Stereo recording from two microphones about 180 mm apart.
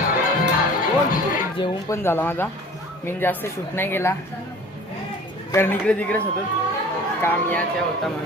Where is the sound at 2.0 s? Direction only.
15° left (ahead or behind).